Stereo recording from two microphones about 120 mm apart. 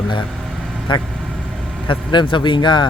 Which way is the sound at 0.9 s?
40° left (ahead or behind).